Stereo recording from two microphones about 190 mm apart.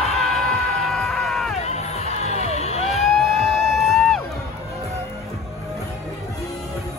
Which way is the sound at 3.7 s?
Centre (ahead or behind).